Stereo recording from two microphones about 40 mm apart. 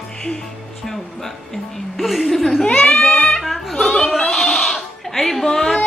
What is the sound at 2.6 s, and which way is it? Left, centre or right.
Speech, centre.